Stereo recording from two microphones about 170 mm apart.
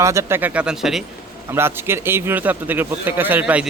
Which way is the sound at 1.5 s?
15° right (ahead or behind).